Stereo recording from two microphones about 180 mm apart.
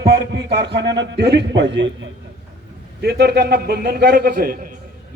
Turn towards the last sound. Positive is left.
turn(degrees=-55)  # may be behind; listen again after turning